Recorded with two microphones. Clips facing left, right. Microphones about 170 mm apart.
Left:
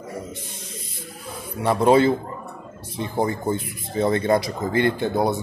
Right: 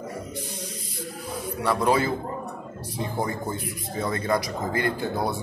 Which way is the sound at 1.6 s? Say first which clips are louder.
Left 6 dB; 25° left (ahead or behind).